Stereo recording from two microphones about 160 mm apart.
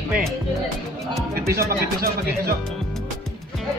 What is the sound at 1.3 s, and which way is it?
Speech, 70° right (ahead or behind).